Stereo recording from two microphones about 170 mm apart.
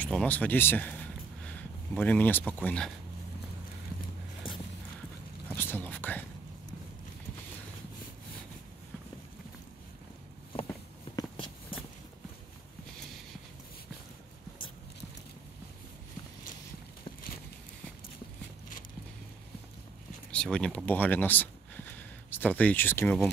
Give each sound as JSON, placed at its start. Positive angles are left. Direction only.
{"t": 0.0, "sound": "a sound", "side_deg": 5}
{"t": 2.0, "sound": "speech", "side_deg": 10}
{"t": 5.5, "sound": "whispering", "side_deg": 10}
{"t": 11.1, "sound": "walk", "side_deg": 30}
{"t": 20.2, "sound": "speech", "side_deg": 5}